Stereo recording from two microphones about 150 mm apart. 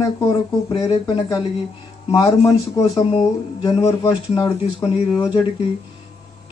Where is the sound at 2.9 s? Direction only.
30° left (ahead or behind).